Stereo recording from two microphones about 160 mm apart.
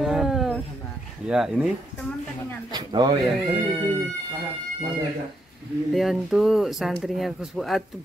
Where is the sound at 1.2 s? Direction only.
5° right (ahead or behind).